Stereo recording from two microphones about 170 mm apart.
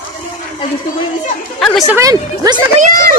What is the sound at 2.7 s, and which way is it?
Speech, 55° right (ahead or behind).